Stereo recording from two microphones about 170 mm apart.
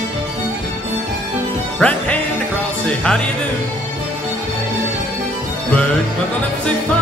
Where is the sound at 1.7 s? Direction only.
5° left (ahead or behind).